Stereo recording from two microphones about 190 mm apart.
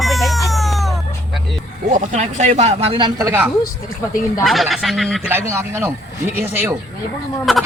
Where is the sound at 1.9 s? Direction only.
40° right (ahead or behind).